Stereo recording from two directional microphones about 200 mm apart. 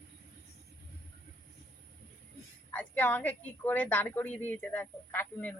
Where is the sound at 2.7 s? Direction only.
10° left (ahead or behind).